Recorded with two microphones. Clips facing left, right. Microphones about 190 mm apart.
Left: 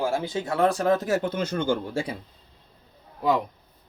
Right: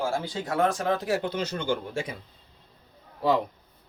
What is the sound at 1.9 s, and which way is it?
Speech, 35° left (ahead or behind).